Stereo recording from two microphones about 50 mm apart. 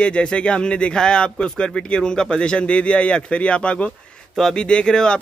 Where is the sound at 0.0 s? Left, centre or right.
Centre.